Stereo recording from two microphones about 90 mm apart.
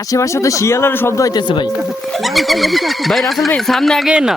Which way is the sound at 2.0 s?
Centre (ahead or behind).